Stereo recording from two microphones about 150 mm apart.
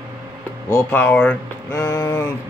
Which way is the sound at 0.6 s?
15° left (ahead or behind).